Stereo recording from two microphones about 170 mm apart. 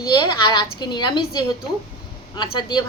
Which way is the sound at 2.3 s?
25° left (ahead or behind).